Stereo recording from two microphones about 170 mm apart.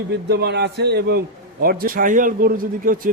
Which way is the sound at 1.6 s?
60° right (ahead or behind).